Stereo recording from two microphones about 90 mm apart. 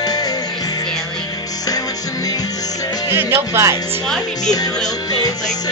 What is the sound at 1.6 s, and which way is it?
Music, 45° left (ahead or behind).